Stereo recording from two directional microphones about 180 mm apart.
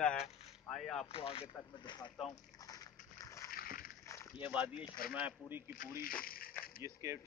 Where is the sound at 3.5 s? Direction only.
55° left (ahead or behind).